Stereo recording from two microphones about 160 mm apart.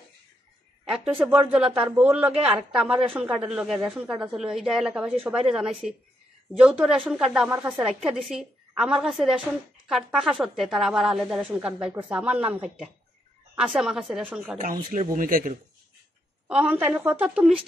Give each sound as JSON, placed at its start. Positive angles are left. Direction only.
{"t": 0.8, "sound": "a woman's voice", "side_deg": -5}
{"t": 14.6, "sound": "speech", "side_deg": -55}
{"t": 16.4, "sound": "speech", "side_deg": -10}